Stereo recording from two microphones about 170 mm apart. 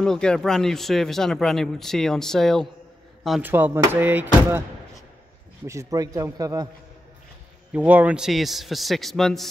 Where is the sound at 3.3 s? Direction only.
10° right (ahead or behind).